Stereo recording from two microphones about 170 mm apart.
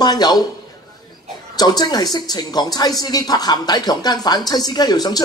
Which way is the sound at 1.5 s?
25° left (ahead or behind).